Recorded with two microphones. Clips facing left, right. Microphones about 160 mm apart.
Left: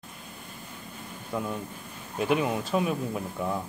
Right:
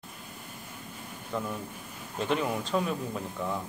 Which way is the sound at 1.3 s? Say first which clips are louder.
Left 2 dB; 10° left (ahead or behind).